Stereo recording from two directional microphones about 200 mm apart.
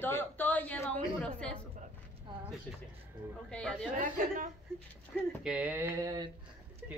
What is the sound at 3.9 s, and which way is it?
Speech, 40° right (ahead or behind).